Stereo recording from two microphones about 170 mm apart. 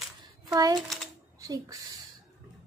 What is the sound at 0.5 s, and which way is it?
A child's voice, 20° right (ahead or behind).